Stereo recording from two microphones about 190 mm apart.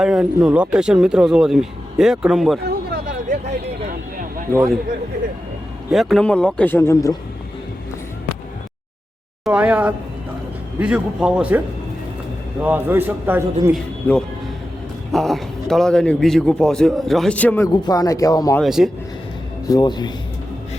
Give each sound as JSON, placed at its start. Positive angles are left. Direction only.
{"t": 0.0, "sound": "speech", "side_deg": -5}
{"t": 2.6, "sound": "a sound", "side_deg": -45}
{"t": 5.9, "sound": "speech", "side_deg": 0}
{"t": 9.4, "sound": "a man's voice", "side_deg": -5}
{"t": 12.6, "sound": "a man's voice", "side_deg": -10}
{"t": 13.7, "sound": "speech", "side_deg": 5}
{"t": 17.7, "sound": "speech", "side_deg": 20}
{"t": 18.6, "sound": "speech", "side_deg": 0}
{"t": 19.6, "sound": "speech", "side_deg": 20}